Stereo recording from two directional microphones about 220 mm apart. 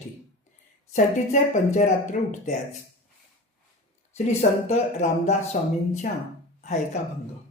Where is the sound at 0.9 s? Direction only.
35° left (ahead or behind).